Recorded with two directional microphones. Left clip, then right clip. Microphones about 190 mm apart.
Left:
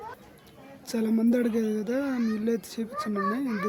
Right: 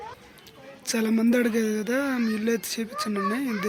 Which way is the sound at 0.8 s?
Centre (ahead or behind).